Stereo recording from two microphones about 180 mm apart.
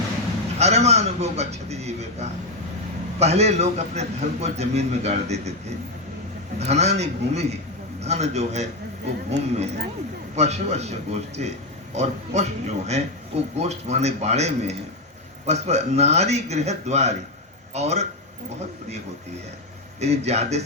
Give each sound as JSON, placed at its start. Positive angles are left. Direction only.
{"t": 0.6, "sound": "a man's voice", "side_deg": -35}
{"t": 20.0, "sound": "a man's voice", "side_deg": -35}